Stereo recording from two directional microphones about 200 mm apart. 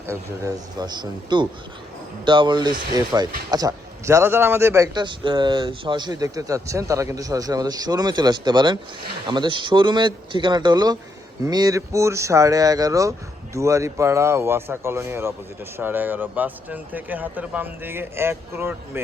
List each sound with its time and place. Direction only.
0.1 s a man's voice: 15° right (ahead or behind)